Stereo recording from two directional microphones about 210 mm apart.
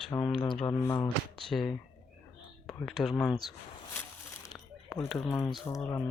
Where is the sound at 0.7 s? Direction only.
15° left (ahead or behind).